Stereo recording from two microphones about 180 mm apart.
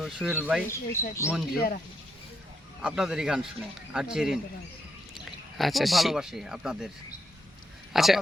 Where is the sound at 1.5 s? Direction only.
55° left (ahead or behind).